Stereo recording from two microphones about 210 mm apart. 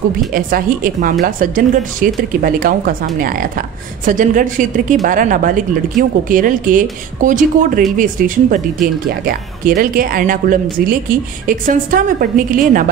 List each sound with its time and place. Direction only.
0.3 s speech: 40° right (ahead or behind)